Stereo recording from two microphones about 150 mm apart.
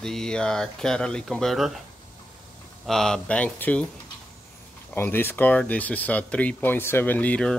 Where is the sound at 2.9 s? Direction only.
5° left (ahead or behind).